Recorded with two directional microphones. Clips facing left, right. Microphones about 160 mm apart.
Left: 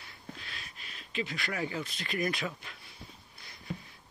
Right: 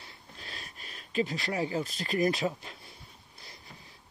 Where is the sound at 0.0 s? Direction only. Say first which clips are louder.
Left 2 dB; 35° right (ahead or behind).